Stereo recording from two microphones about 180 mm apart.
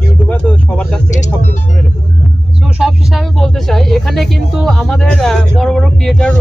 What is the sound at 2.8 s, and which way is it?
Speech, centre (ahead or behind).